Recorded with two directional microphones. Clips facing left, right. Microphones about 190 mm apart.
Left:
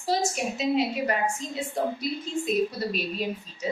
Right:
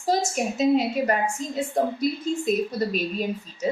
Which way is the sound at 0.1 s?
45° right (ahead or behind).